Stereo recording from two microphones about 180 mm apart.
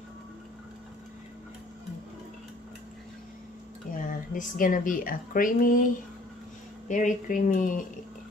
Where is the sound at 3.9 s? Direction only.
50° left (ahead or behind).